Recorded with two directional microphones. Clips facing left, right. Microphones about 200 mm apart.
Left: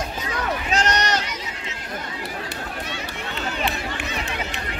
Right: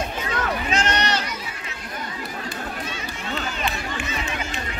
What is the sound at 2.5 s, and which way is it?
Run, 65° left (ahead or behind).